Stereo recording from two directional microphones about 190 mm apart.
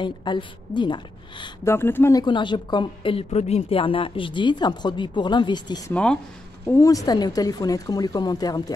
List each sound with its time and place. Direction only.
0.0 s a woman's voice: 25° left (ahead or behind)
2.2 s a woman's voice: 25° left (ahead or behind)
5.9 s a woman's voice: 5° left (ahead or behind)